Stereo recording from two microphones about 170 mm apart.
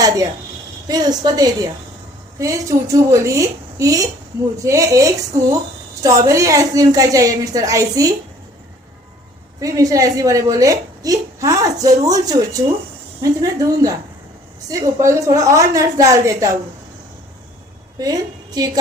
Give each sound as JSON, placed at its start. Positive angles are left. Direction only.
{"t": 0.9, "sound": "a woman's voice", "side_deg": -25}
{"t": 9.6, "sound": "a woman's voice", "side_deg": -20}
{"t": 18.0, "sound": "a woman's voice", "side_deg": -20}